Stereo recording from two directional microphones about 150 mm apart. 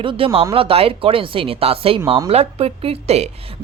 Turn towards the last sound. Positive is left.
turn(degrees=-45)  # may be behind; listen again after turning